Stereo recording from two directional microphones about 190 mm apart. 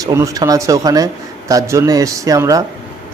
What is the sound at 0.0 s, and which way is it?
A man's voice, 15° right (ahead or behind).